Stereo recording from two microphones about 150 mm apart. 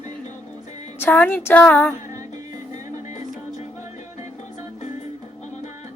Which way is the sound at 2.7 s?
55° left (ahead or behind).